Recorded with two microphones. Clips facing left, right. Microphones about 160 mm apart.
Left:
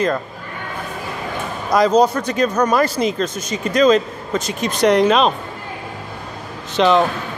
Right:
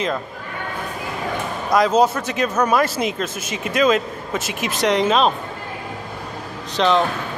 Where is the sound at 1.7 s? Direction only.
Centre (ahead or behind).